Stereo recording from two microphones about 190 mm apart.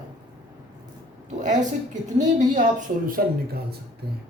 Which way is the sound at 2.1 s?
40° right (ahead or behind).